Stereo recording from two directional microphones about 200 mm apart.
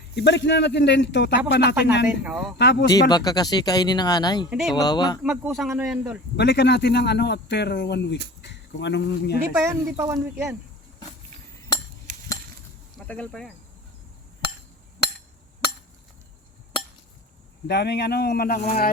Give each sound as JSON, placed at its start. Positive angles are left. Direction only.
{"t": 0.2, "sound": "a man's voice", "side_deg": 60}
{"t": 2.0, "sound": "speech", "side_deg": -5}
{"t": 2.6, "sound": "a man's voice", "side_deg": 60}
{"t": 3.1, "sound": "speech", "side_deg": 20}
{"t": 4.4, "sound": "speech", "side_deg": 0}
{"t": 4.8, "sound": "speech", "side_deg": 20}
{"t": 5.2, "sound": "speech", "side_deg": -5}
{"t": 6.3, "sound": "a man's voice", "side_deg": 60}
{"t": 9.6, "sound": "speech", "side_deg": -15}
{"t": 13.1, "sound": "speech", "side_deg": 5}
{"t": 17.7, "sound": "speech", "side_deg": 55}